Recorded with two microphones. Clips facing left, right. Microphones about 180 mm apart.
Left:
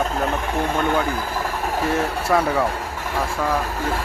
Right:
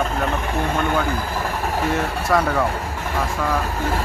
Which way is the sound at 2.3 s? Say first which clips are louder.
Even; 10° left (ahead or behind).